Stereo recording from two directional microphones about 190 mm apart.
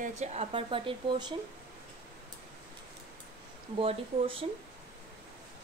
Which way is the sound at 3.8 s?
30° right (ahead or behind).